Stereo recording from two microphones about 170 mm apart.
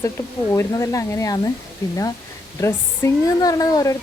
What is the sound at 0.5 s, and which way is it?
Speech, 15° left (ahead or behind).